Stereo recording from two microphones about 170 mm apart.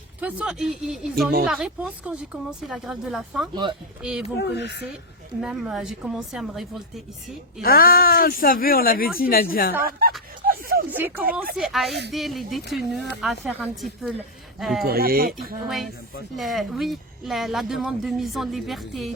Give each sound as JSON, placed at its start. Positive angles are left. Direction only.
{"t": 0.2, "sound": "speech", "side_deg": -10}
{"t": 3.5, "sound": "speech", "side_deg": -25}
{"t": 4.0, "sound": "speech", "side_deg": -5}
{"t": 4.4, "sound": "speech", "side_deg": 80}
{"t": 5.4, "sound": "speech", "side_deg": -5}
{"t": 7.6, "sound": "speech", "side_deg": 60}
{"t": 10.4, "sound": "a sound", "side_deg": -60}
{"t": 10.9, "sound": "speech", "side_deg": -10}
{"t": 14.8, "sound": "speech", "side_deg": -60}
{"t": 15.6, "sound": "speech", "side_deg": 0}